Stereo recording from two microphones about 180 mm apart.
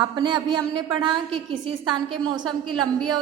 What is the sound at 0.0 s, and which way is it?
A woman's voice, 25° right (ahead or behind).